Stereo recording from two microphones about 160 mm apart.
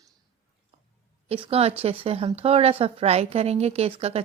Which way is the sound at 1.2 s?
35° right (ahead or behind).